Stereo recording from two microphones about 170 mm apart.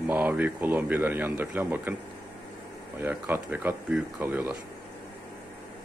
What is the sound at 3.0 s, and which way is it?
Speech, 10° right (ahead or behind).